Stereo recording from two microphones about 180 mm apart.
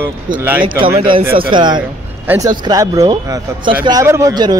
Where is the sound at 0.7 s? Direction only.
25° right (ahead or behind).